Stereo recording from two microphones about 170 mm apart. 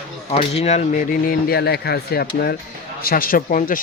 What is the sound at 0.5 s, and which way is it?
Speech, 40° left (ahead or behind).